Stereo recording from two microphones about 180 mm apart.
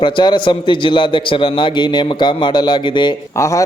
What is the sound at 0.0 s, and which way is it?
A man's voice, 25° left (ahead or behind).